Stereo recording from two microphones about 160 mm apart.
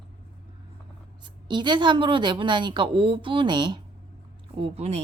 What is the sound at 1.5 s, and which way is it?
Speech, 30° right (ahead or behind).